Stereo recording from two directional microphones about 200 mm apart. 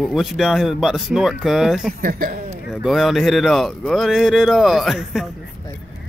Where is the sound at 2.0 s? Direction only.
45° right (ahead or behind).